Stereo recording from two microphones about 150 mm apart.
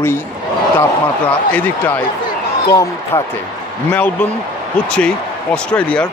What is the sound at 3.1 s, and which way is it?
Speech, 15° left (ahead or behind).